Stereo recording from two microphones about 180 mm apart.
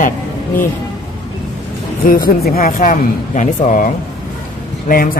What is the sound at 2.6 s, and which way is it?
Speech, 45° left (ahead or behind).